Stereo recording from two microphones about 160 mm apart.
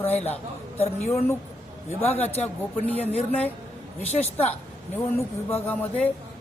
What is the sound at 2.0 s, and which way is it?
Speech, 10° left (ahead or behind).